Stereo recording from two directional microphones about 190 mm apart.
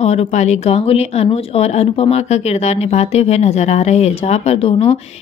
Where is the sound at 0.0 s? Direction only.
35° left (ahead or behind).